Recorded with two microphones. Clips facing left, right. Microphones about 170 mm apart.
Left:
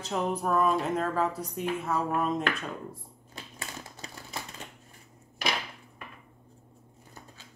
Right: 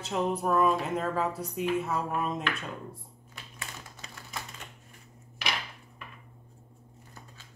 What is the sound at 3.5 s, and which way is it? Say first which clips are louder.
Typewriter: left 2 dB; 35° left (ahead or behind).